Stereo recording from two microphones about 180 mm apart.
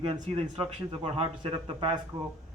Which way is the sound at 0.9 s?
30° right (ahead or behind).